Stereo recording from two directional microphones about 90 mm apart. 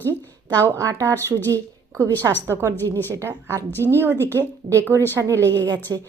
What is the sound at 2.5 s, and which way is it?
Speech, 30° right (ahead or behind).